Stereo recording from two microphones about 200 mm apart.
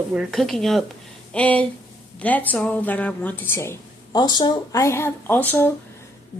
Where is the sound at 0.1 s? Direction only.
Centre (ahead or behind).